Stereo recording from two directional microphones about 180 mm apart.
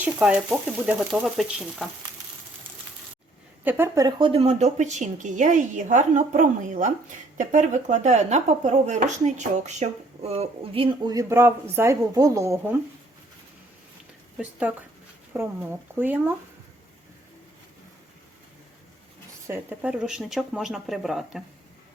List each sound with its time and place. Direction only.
0.0 s speech: 5° right (ahead or behind)
3.6 s speech: 10° right (ahead or behind)
4.3 s a woman's voice: 35° right (ahead or behind); by 12.7 s 15° right (ahead or behind)
14.3 s speech: 5° right (ahead or behind)
19.5 s speech: 10° right (ahead or behind)